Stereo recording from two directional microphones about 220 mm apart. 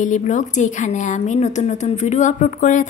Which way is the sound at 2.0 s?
35° left (ahead or behind).